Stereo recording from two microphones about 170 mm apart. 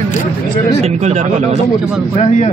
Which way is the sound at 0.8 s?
40° right (ahead or behind).